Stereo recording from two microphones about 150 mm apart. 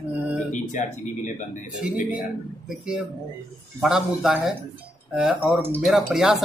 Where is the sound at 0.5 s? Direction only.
55° left (ahead or behind).